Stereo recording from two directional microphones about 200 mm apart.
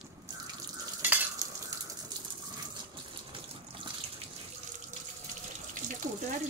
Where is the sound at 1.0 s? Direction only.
10° right (ahead or behind).